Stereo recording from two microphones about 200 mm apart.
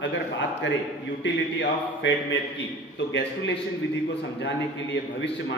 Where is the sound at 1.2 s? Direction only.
65° left (ahead or behind).